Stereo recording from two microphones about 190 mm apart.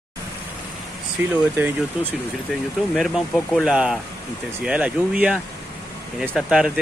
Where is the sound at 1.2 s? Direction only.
10° right (ahead or behind).